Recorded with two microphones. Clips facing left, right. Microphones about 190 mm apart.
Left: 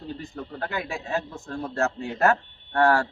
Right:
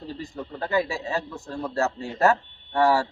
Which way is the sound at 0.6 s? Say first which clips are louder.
Right 7 dB; centre (ahead or behind).